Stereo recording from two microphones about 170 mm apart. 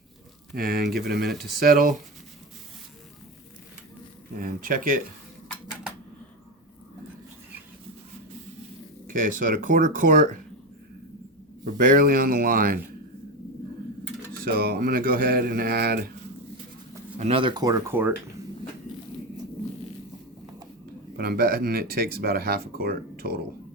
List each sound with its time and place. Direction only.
0.5 s speech: 60° right (ahead or behind)
4.4 s speech: 55° right (ahead or behind)
9.0 s speech: 55° right (ahead or behind)
11.6 s speech: 50° right (ahead or behind)
14.4 s speech: 65° right (ahead or behind)
17.2 s speech: 35° right (ahead or behind)
21.2 s speech: 65° right (ahead or behind)